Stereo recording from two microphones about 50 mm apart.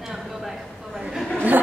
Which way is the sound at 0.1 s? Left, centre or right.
Centre.